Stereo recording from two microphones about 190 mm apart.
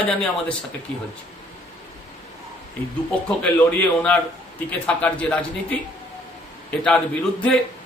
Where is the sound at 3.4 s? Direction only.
5° left (ahead or behind).